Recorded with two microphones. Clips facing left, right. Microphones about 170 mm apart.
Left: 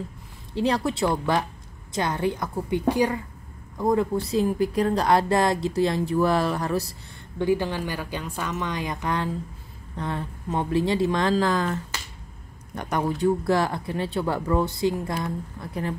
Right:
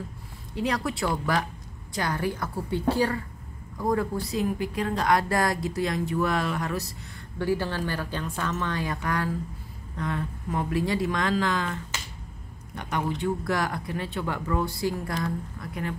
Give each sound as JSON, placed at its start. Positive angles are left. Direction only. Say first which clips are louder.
{"t": 0.6, "sound": "speech", "louder": "left 4 dB", "side_deg": 25}
{"t": 7.3, "sound": "speech", "louder": "left 3 dB", "side_deg": 15}
{"t": 13.4, "sound": "speech", "louder": "left 5 dB", "side_deg": 30}